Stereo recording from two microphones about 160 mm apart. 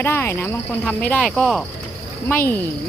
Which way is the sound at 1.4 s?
Centre (ahead or behind).